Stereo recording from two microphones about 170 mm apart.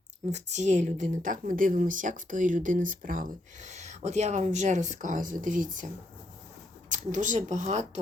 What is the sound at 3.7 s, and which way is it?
Speech, 40° right (ahead or behind).